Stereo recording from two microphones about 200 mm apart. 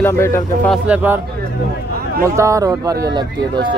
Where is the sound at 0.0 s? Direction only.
15° left (ahead or behind).